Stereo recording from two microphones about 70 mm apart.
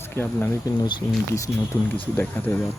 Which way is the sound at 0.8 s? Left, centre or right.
Left.